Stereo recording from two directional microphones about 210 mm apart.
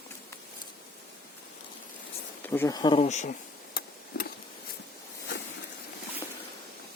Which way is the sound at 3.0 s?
35° left (ahead or behind).